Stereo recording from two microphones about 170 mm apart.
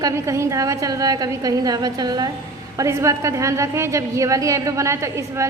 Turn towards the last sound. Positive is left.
turn(degrees=-15)  # may be behind; listen again after turning